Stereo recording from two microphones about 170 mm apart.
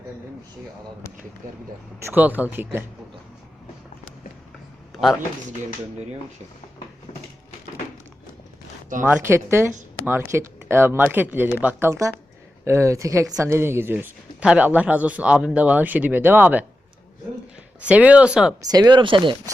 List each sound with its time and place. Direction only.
2.0 s a woman's voice: 15° right (ahead or behind)
9.0 s a woman's voice: 10° right (ahead or behind)
17.7 s a woman's voice: 10° right (ahead or behind)
18.7 s speech: 25° right (ahead or behind)